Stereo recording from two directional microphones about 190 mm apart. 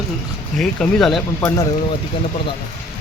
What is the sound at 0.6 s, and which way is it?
Speech, 5° left (ahead or behind).